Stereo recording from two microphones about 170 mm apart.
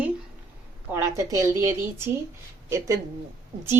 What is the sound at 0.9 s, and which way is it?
A woman's voice, 15° right (ahead or behind).